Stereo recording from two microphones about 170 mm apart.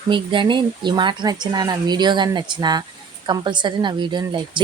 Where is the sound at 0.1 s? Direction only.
30° right (ahead or behind).